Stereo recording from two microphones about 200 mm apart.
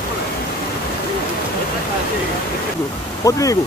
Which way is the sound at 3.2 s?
15° left (ahead or behind).